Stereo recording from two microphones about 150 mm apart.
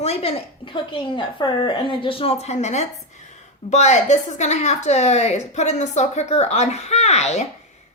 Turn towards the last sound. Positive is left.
turn(degrees=50)  # may be behind; listen again after turning